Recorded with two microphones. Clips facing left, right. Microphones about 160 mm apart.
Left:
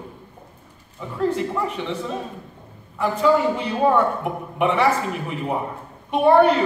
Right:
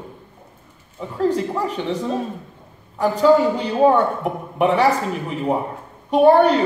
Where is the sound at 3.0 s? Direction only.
35° right (ahead or behind).